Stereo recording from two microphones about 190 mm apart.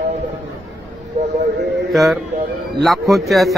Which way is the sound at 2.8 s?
Centre (ahead or behind).